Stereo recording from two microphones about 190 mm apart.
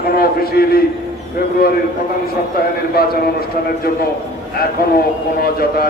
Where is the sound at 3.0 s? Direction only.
55° left (ahead or behind).